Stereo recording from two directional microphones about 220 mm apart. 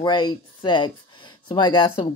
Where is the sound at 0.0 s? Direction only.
20° left (ahead or behind).